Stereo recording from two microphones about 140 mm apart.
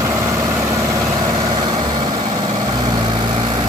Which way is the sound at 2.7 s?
30° right (ahead or behind).